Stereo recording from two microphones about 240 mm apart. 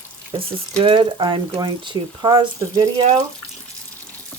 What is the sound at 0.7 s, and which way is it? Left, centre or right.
Speech, centre.